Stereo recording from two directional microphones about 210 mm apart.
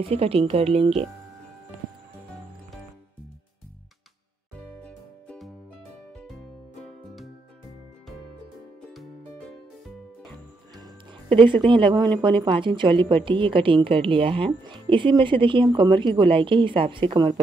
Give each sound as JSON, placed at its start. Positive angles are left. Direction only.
{"t": 0.1, "sound": "a woman's voice", "side_deg": -30}
{"t": 4.8, "sound": "music", "side_deg": 5}
{"t": 10.8, "sound": "music", "side_deg": -25}
{"t": 12.2, "sound": "a woman's voice", "side_deg": -20}